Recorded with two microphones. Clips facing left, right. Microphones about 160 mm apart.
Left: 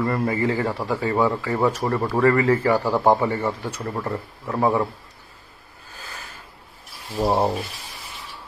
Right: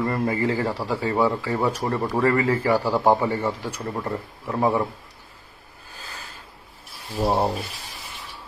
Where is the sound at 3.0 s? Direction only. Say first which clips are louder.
Left 2 dB; 15° left (ahead or behind).